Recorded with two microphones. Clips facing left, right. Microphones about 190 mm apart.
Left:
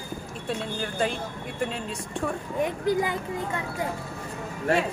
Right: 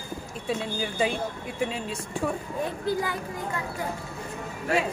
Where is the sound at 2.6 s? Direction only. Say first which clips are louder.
Left 4 dB; 20° left (ahead or behind).